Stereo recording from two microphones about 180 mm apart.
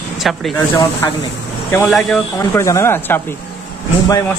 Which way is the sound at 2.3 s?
15° left (ahead or behind).